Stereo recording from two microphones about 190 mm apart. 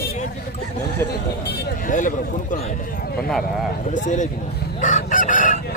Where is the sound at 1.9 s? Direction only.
45° left (ahead or behind).